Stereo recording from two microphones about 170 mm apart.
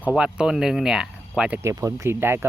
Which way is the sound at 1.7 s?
20° right (ahead or behind).